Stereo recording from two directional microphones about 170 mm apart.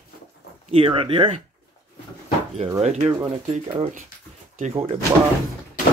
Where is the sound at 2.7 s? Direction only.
40° right (ahead or behind).